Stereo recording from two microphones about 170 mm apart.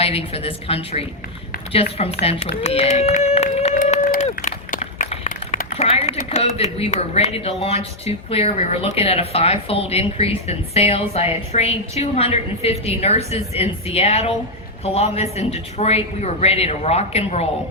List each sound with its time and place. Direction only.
0.0 s a woman's voice: 35° left (ahead or behind)
4.0 s run: 55° left (ahead or behind)
4.4 s a sound: 40° left (ahead or behind)
5.7 s a woman's voice: 35° left (ahead or behind)